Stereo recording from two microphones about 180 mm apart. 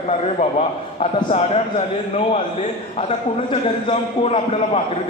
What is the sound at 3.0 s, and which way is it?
A man's voice, 30° left (ahead or behind).